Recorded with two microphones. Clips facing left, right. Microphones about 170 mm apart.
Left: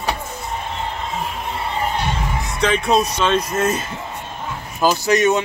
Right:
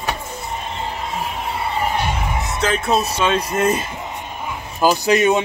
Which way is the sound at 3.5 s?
15° right (ahead or behind).